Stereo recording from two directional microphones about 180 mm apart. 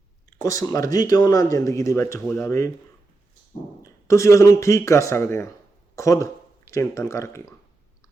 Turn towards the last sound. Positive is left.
turn(degrees=15)  # may be behind; listen again after turning